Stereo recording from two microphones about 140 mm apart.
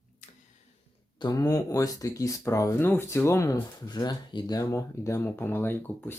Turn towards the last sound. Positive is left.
turn(degrees=15)  # may be behind; listen again after turning